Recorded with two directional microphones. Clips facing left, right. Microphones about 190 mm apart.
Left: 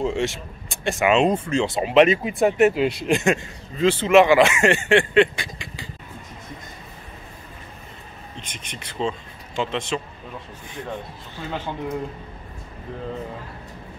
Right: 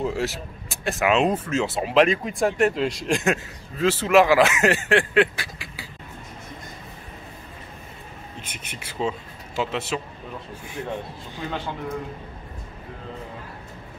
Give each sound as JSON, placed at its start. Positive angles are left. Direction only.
{"t": 0.0, "sound": "speech", "side_deg": -5}
{"t": 8.4, "sound": "speech", "side_deg": -10}